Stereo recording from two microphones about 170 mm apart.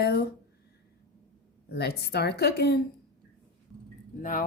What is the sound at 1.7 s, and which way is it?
Speech, 70° left (ahead or behind).